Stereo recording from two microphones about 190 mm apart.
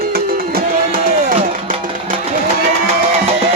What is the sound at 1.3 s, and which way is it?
Music, 35° right (ahead or behind).